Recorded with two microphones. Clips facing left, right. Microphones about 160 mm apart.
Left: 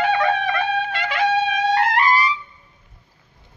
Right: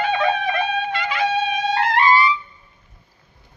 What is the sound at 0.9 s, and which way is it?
Music, 70° left (ahead or behind).